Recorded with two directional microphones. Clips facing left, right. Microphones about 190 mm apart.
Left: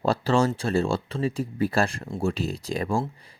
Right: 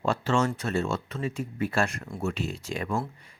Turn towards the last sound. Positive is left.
turn(degrees=30)  # may be behind; listen again after turning